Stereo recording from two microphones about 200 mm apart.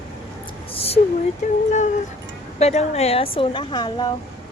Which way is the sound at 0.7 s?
30° left (ahead or behind).